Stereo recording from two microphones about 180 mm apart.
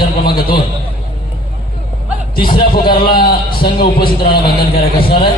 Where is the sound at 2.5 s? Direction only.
55° left (ahead or behind).